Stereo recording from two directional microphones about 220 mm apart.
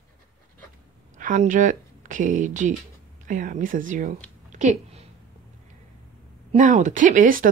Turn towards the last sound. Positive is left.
turn(degrees=-35)  # may be behind; listen again after turning